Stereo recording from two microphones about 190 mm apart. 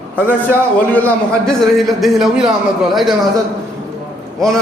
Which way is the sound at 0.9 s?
10° left (ahead or behind).